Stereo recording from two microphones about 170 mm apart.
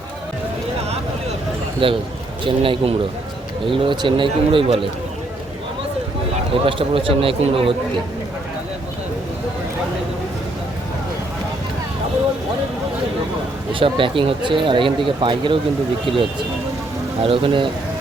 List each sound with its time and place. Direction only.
1.8 s speech: 30° right (ahead or behind)
6.5 s speech: 30° right (ahead or behind)
13.7 s speech: 30° right (ahead or behind)
17.2 s speech: 30° right (ahead or behind)